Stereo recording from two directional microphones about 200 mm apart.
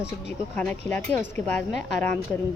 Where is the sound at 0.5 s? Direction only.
10° left (ahead or behind).